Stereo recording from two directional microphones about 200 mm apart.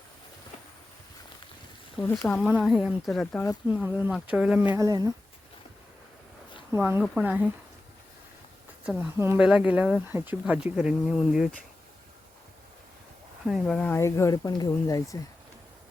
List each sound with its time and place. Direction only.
2.0 s speech: 10° left (ahead or behind)
3.7 s speech: 10° right (ahead or behind)
4.7 s speech: 15° right (ahead or behind)
6.7 s speech: 10° right (ahead or behind)
8.9 s speech: 10° right (ahead or behind)
13.4 s speech: 5° right (ahead or behind)
13.7 s speech: 10° left (ahead or behind)